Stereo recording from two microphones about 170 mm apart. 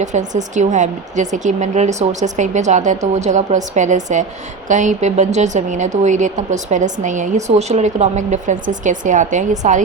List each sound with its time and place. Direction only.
0.0 s a woman's voice: 45° right (ahead or behind)